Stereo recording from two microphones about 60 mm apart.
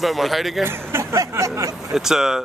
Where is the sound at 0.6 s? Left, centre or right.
Right.